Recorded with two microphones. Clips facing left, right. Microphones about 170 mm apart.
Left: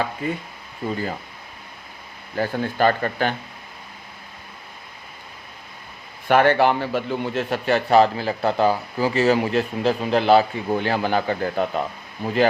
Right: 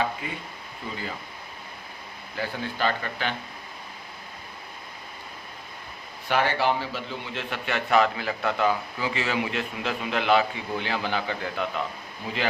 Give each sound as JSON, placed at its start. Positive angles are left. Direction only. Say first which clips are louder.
{"t": 0.8, "sound": "speech", "louder": "left 10 dB", "side_deg": 50}
{"t": 2.3, "sound": "speech", "louder": "left 8 dB", "side_deg": 50}
{"t": 6.2, "sound": "a man's voice", "louder": "left 8 dB", "side_deg": 55}